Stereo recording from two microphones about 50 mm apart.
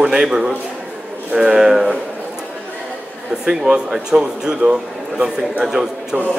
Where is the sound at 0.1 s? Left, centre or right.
Centre.